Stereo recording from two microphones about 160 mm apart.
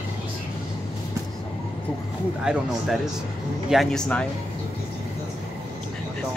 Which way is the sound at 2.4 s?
5° right (ahead or behind).